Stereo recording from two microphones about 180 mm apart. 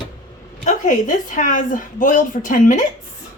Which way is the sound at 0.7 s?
45° left (ahead or behind).